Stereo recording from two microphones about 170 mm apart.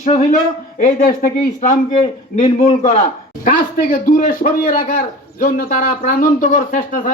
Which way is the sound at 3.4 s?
55° left (ahead or behind).